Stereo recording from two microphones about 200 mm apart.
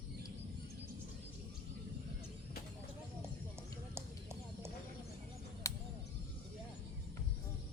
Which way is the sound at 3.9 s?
15° right (ahead or behind).